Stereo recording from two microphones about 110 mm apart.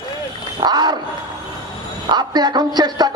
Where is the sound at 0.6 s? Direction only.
40° right (ahead or behind).